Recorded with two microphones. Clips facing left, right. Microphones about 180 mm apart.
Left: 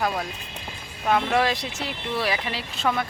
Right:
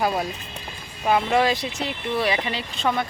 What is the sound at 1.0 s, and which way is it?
Speech, 5° right (ahead or behind).